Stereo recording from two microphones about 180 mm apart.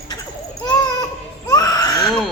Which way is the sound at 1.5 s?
20° left (ahead or behind).